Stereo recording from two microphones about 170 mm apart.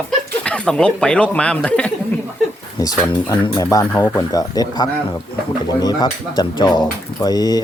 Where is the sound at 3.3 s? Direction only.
20° left (ahead or behind).